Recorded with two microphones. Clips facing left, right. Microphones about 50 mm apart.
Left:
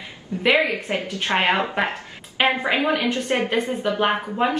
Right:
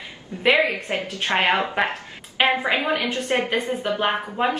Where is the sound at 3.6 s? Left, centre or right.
Centre.